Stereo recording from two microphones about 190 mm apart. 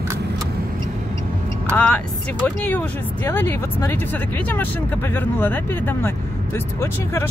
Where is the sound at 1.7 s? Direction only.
5° left (ahead or behind).